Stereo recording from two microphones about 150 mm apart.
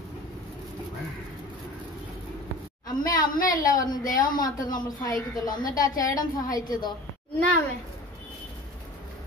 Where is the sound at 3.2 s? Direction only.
65° left (ahead or behind).